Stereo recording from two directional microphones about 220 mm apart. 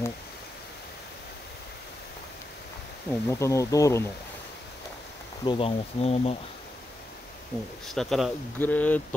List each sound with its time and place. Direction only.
3.1 s speech: 15° left (ahead or behind)
5.4 s speech: 25° left (ahead or behind)
7.9 s speech: centre (ahead or behind)